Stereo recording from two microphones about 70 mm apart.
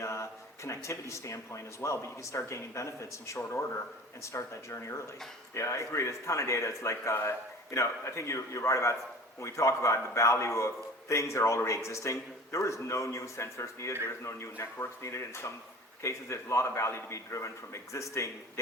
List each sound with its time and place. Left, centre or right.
0.0 s speech: left